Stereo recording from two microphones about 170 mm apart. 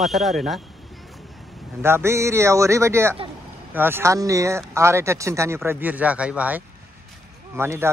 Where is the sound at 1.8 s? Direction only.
15° right (ahead or behind).